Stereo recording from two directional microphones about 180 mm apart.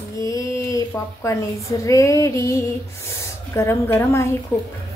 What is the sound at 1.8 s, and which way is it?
Female singing, 15° left (ahead or behind).